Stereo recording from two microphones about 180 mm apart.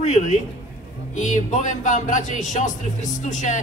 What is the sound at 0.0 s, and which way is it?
A man's voice, 40° left (ahead or behind).